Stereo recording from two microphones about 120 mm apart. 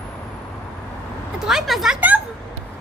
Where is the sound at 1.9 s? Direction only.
15° right (ahead or behind).